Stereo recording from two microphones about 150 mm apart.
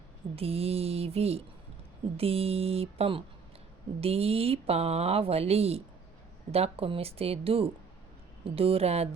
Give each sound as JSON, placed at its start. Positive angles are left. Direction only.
{"t": 0.3, "sound": "speech", "side_deg": -40}